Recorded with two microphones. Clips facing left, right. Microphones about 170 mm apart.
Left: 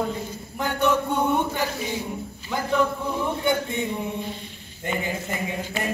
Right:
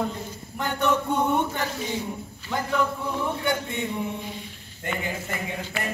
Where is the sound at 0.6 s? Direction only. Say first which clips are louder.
Left 2 dB; 5° left (ahead or behind).